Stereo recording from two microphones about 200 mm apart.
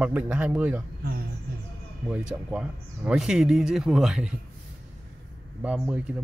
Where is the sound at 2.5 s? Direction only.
5° right (ahead or behind).